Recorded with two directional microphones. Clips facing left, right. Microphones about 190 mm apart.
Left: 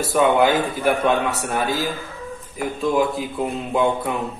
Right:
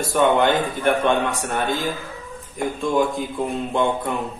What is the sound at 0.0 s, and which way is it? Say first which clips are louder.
Speech: left 1 dB; 5° left (ahead or behind).